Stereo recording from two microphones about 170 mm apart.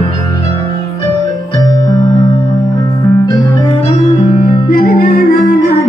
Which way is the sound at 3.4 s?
30° left (ahead or behind).